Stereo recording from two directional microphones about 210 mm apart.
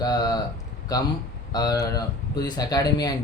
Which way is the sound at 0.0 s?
20° left (ahead or behind).